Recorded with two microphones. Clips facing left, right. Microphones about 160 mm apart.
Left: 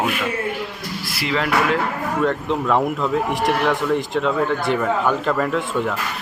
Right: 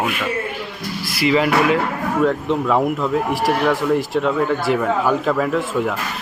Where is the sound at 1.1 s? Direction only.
5° right (ahead or behind).